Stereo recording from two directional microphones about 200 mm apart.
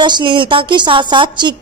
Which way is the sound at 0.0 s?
25° right (ahead or behind).